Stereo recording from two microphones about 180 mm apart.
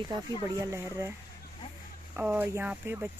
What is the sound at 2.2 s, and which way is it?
Speech, 10° right (ahead or behind).